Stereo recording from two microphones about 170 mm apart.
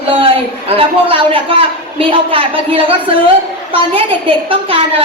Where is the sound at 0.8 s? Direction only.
30° right (ahead or behind).